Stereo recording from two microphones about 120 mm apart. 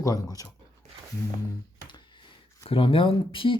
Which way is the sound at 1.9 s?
40° left (ahead or behind).